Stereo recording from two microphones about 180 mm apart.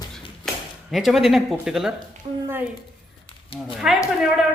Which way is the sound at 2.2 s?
35° right (ahead or behind).